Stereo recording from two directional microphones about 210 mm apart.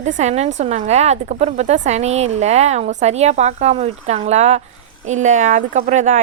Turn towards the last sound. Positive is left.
turn(degrees=-35)  # may be behind; listen again after turning